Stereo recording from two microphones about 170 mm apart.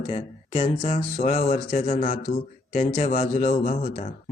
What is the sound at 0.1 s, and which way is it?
A man's voice, 35° left (ahead or behind).